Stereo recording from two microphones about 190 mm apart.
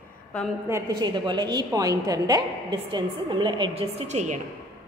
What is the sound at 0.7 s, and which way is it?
A woman's voice, 15° right (ahead or behind).